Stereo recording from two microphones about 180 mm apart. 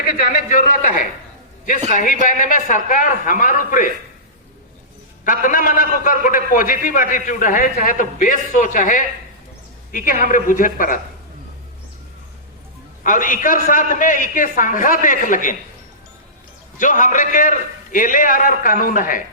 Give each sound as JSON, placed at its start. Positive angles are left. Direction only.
{"t": 0.5, "sound": "a man's voice", "side_deg": 50}
{"t": 5.2, "sound": "a man's voice", "side_deg": 50}
{"t": 13.0, "sound": "a man's voice", "side_deg": 50}
{"t": 16.7, "sound": "a man's voice", "side_deg": 45}